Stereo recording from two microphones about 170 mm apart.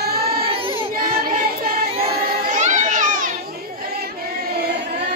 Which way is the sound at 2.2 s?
45° right (ahead or behind).